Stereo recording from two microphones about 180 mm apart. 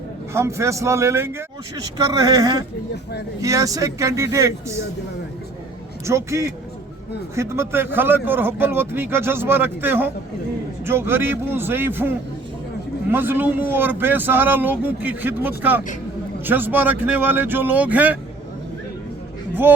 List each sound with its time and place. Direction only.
0.3 s a man's voice: 15° right (ahead or behind)
2.9 s speech: 65° left (ahead or behind)
3.4 s a man's voice: 20° right (ahead or behind)
6.1 s a man's voice: 15° right (ahead or behind)
19.6 s a man's voice: 10° right (ahead or behind)